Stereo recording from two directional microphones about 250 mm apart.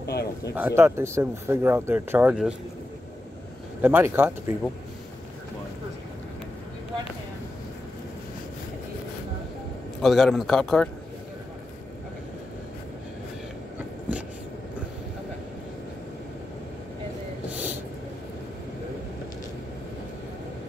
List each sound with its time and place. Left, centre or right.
0.0 s a sound: left
0.6 s speech: centre
3.8 s speech: centre
10.0 s speech: centre
14.1 s vehicle: centre